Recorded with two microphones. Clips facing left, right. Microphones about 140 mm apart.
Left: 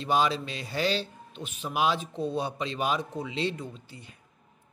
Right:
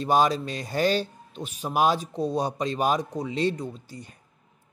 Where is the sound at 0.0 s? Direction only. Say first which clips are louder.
Right 4 dB; 45° right (ahead or behind).